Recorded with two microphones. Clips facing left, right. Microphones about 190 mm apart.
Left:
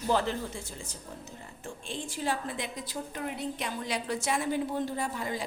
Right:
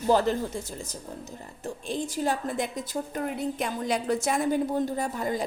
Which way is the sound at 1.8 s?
40° right (ahead or behind).